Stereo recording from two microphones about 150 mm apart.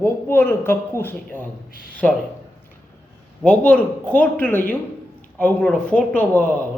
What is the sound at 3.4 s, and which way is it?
Speech, 10° left (ahead or behind).